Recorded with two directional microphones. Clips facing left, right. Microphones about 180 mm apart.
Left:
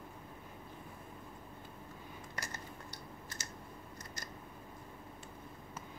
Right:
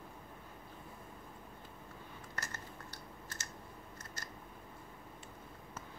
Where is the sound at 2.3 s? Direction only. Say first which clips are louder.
Left 1 dB; 10° left (ahead or behind).